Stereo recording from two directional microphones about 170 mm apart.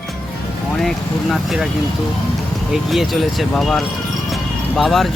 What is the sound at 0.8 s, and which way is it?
Vehicle, centre (ahead or behind).